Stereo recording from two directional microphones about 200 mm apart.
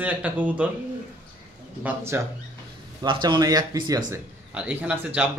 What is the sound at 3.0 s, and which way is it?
Speech, 25° right (ahead or behind).